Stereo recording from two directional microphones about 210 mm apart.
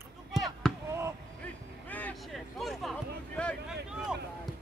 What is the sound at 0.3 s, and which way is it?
Basketball bounce, centre (ahead or behind).